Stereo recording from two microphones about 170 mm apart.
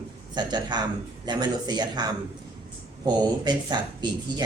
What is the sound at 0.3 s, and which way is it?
Speech, 25° right (ahead or behind).